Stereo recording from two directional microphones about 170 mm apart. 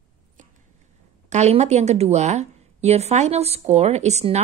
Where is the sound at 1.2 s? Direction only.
40° right (ahead or behind).